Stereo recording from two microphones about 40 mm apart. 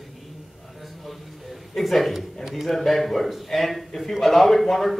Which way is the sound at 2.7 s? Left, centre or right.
Centre.